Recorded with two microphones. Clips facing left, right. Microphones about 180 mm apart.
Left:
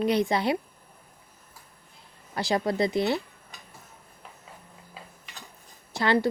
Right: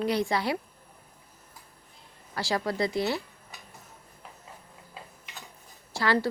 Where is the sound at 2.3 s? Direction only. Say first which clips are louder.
Left 3 dB; 20° left (ahead or behind).